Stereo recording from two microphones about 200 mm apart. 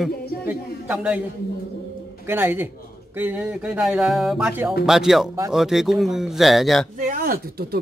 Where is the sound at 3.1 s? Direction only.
10° right (ahead or behind).